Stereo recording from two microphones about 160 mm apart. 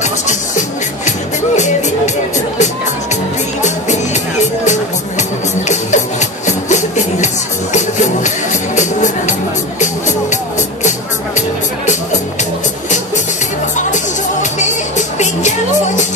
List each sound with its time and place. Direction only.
0.0 s music: 50° left (ahead or behind)
3.6 s music: 45° left (ahead or behind)
13.7 s music: 50° left (ahead or behind)